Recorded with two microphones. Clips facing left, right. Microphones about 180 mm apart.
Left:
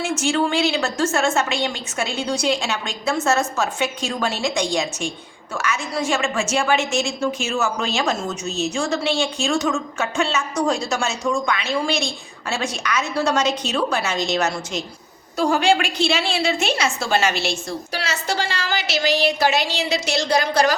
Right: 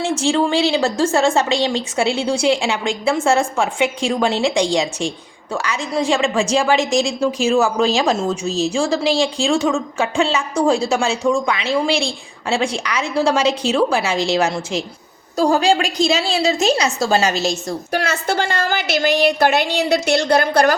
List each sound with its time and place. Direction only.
0.0 s a woman's voice: 30° right (ahead or behind); by 20.7 s 55° right (ahead or behind)